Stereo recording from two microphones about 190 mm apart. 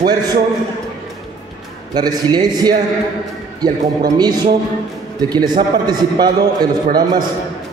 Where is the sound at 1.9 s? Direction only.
20° right (ahead or behind).